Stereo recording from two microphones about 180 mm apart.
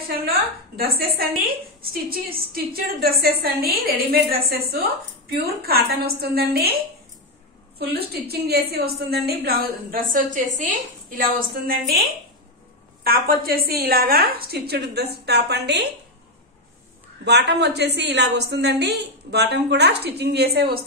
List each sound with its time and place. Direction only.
0.2 s a woman's voice: 55° right (ahead or behind)
7.8 s a woman's voice: 60° right (ahead or behind)
13.0 s a woman's voice: 55° right (ahead or behind)
17.2 s a woman's voice: 75° right (ahead or behind)